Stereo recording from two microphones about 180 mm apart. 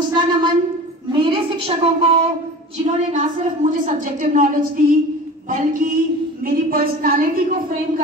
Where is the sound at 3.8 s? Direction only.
50° right (ahead or behind).